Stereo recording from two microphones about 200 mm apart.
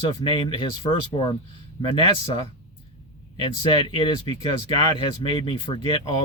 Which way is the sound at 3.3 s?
25° left (ahead or behind).